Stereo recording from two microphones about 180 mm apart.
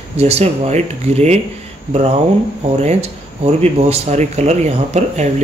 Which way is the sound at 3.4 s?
35° right (ahead or behind).